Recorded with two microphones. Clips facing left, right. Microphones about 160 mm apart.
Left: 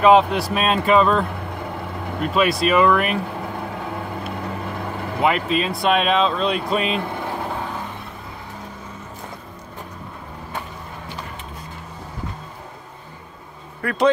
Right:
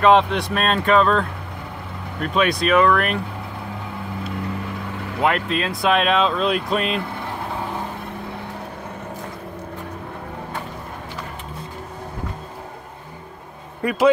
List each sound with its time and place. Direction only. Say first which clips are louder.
0.0 s speech: left 1 dB; 5° left (ahead or behind)
2.2 s speech: left 1 dB; centre (ahead or behind)
5.2 s speech: left 1 dB; centre (ahead or behind)
13.8 s a man's voice: right 3 dB; 20° right (ahead or behind)